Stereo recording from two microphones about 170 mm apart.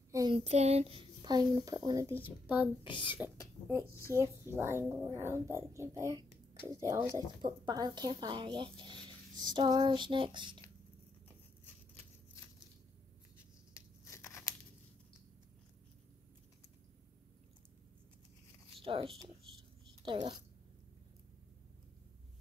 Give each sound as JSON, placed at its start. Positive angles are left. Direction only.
{"t": 0.3, "sound": "a child's voice", "side_deg": -40}
{"t": 2.4, "sound": "speech", "side_deg": -10}
{"t": 2.8, "sound": "speech", "side_deg": 30}
{"t": 4.1, "sound": "speech", "side_deg": -15}
{"t": 11.6, "sound": "a sound", "side_deg": 10}
{"t": 13.7, "sound": "a sound", "side_deg": 20}
{"t": 18.8, "sound": "speech", "side_deg": -30}